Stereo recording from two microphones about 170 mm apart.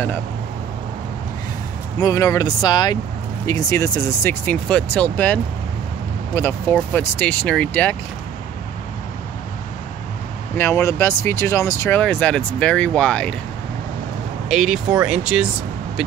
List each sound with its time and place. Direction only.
2.0 s speech: 20° left (ahead or behind)
10.6 s speech: 15° left (ahead or behind)
12.0 s speech: 10° left (ahead or behind)
14.5 s speech: centre (ahead or behind)